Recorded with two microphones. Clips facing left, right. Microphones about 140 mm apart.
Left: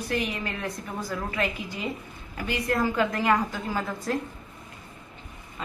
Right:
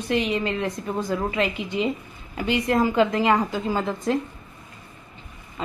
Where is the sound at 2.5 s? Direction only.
20° right (ahead or behind).